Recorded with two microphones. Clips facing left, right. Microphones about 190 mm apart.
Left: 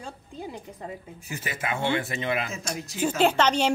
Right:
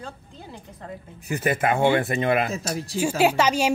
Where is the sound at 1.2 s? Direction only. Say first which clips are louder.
Right 10 dB; 55° right (ahead or behind).